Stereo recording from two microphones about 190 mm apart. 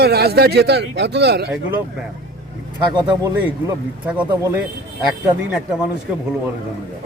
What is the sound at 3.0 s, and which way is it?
Speech, 20° right (ahead or behind).